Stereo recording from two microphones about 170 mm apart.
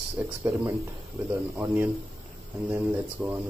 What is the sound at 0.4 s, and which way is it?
Speech, 20° right (ahead or behind).